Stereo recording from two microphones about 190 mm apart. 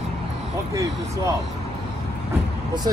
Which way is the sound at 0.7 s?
15° right (ahead or behind).